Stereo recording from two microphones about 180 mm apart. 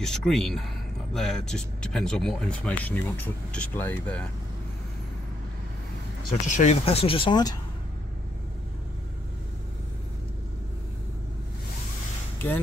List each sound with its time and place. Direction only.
0.0 s speech: 5° left (ahead or behind)
6.4 s speech: 40° left (ahead or behind); by 7.5 s 25° left (ahead or behind)